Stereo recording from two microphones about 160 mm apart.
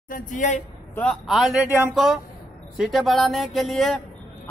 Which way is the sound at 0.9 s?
Centre (ahead or behind).